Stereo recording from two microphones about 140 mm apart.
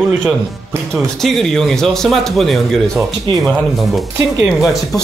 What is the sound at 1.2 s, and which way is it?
Speech, centre (ahead or behind).